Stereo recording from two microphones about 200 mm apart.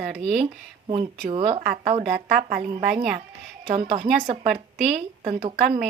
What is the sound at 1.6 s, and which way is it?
A woman's voice, 45° right (ahead or behind).